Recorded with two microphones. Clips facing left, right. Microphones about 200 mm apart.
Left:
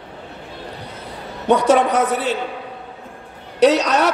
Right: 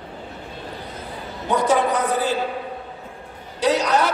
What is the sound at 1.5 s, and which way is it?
Speech, 70° left (ahead or behind).